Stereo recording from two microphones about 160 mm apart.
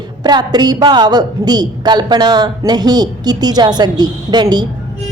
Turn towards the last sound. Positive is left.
turn(degrees=-25)  # may be behind; listen again after turning